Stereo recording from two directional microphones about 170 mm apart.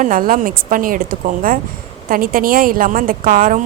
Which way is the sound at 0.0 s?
55° right (ahead or behind).